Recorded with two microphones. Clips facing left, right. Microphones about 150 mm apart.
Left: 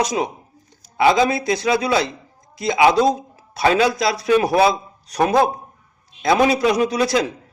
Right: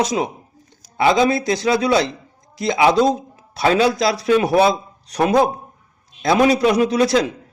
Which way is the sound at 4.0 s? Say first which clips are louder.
Right 1 dB; 30° right (ahead or behind).